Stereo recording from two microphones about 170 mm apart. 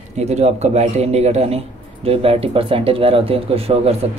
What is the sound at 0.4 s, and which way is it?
Speech, 40° right (ahead or behind).